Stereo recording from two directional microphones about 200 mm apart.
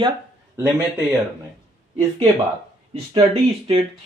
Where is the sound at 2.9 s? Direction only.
30° right (ahead or behind).